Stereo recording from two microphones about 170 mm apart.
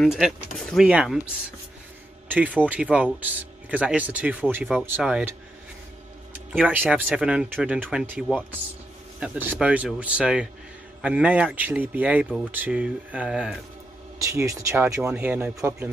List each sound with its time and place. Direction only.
0.0 s speech: centre (ahead or behind)
6.5 s speech: 10° right (ahead or behind)
14.1 s speech: 20° right (ahead or behind)